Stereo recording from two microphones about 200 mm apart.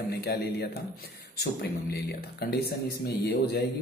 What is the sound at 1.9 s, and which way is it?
Speech, 55° left (ahead or behind).